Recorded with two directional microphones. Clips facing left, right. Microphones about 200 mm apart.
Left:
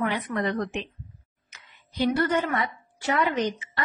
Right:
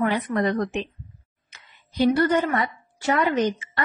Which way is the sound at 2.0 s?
40° right (ahead or behind).